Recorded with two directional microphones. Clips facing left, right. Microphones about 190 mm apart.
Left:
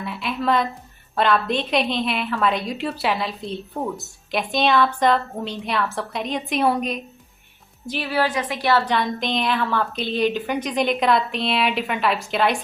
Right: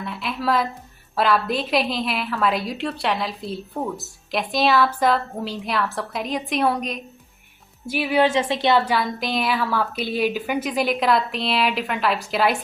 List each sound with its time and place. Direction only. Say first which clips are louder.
0.0 s a woman's voice: left 1 dB; centre (ahead or behind)
7.9 s speech: right 4 dB; 10° right (ahead or behind)
8.8 s a woman's voice: even; 5° right (ahead or behind)